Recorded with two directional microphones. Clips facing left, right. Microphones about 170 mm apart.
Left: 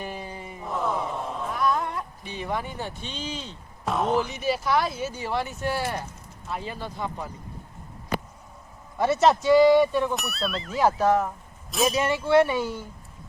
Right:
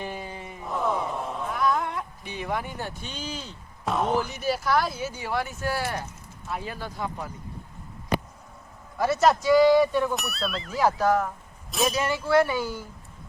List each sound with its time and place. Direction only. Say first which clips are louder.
0.6 s chant: right 1 dB; centre (ahead or behind)
1.7 s a sound: even; 5° right (ahead or behind)
2.2 s speech: even; 15° right (ahead or behind)
5.4 s speech: even; 15° left (ahead or behind)
6.5 s speech: even; 5° right (ahead or behind)
9.0 s a man's voice: left 1 dB; 25° left (ahead or behind)
10.2 s speech: left 1 dB; centre (ahead or behind)